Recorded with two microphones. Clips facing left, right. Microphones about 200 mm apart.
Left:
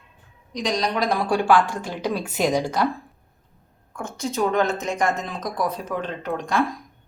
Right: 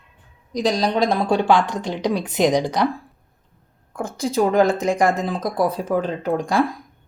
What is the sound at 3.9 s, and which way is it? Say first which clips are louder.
Speech: right 5 dB; 35° right (ahead or behind).